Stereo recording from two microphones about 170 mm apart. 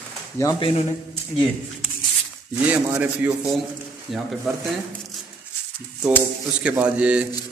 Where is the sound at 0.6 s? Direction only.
30° left (ahead or behind).